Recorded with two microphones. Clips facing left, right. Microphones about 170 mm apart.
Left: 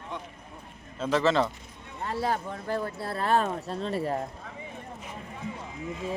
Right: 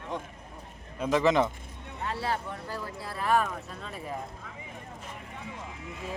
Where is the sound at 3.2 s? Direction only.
25° left (ahead or behind).